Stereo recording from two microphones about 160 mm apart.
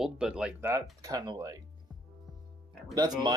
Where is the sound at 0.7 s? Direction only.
25° right (ahead or behind).